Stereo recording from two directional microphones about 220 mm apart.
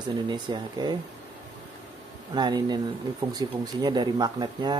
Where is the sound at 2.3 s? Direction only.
20° right (ahead or behind).